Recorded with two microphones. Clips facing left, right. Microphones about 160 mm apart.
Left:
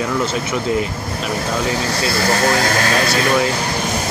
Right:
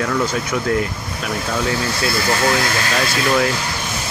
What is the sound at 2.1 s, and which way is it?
Speech, 40° left (ahead or behind).